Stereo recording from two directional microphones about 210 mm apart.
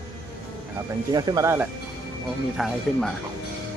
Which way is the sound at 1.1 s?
15° right (ahead or behind).